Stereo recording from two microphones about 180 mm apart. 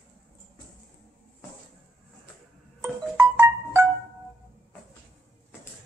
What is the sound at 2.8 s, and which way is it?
Music, 15° right (ahead or behind).